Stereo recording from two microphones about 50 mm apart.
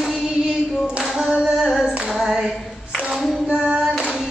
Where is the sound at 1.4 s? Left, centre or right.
Centre.